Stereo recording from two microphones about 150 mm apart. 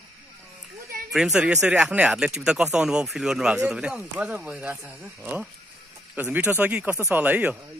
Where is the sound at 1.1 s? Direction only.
5° right (ahead or behind).